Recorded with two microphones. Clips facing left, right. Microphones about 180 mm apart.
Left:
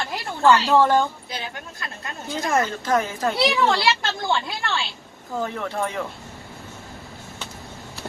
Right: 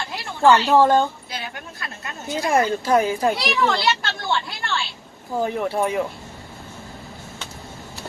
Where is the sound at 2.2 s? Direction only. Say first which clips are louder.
Right 3 dB; 20° right (ahead or behind).